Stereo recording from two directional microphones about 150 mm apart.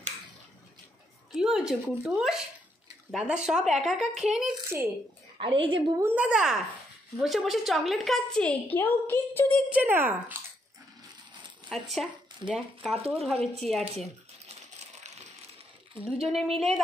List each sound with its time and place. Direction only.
1.3 s a woman's voice: 5° right (ahead or behind)
5.4 s a woman's voice: 35° right (ahead or behind)
6.0 s a woman's voice: 10° right (ahead or behind); by 9.6 s 15° left (ahead or behind)
9.7 s speech: 10° right (ahead or behind)
11.7 s a woman's voice: centre (ahead or behind)
16.2 s a woman's voice: centre (ahead or behind)